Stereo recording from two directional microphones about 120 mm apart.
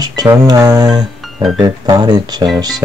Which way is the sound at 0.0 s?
35° right (ahead or behind).